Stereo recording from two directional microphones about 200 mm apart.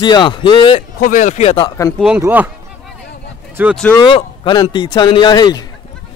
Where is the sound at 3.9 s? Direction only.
25° left (ahead or behind).